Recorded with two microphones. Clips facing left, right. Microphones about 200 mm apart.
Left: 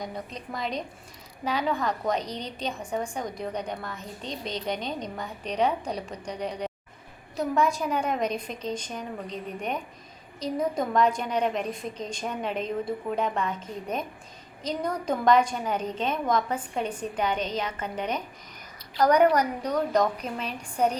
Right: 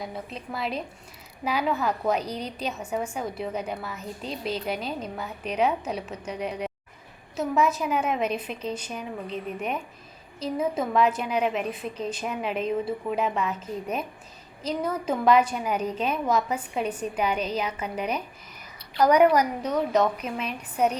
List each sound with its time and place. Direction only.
0.0 s a woman's voice: 5° right (ahead or behind)
18.9 s a woman's voice: 10° right (ahead or behind)